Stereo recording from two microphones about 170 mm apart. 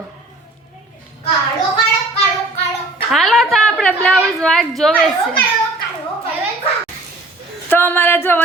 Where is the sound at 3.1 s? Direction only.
Centre (ahead or behind).